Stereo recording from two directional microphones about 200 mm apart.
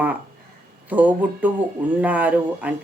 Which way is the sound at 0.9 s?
10° right (ahead or behind).